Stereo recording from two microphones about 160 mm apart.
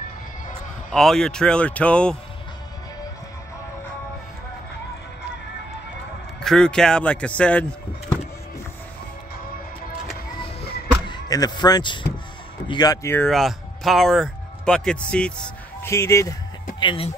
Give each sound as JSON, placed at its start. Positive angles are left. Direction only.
{"t": 0.9, "sound": "speech", "side_deg": 5}
{"t": 6.4, "sound": "speech", "side_deg": 5}
{"t": 11.1, "sound": "speech", "side_deg": 25}
{"t": 13.3, "sound": "speech", "side_deg": 0}
{"t": 15.9, "sound": "speech", "side_deg": 20}
{"t": 16.8, "sound": "speech", "side_deg": 35}